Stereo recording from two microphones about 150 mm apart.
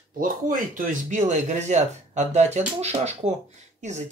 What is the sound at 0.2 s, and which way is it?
Speech, 65° right (ahead or behind).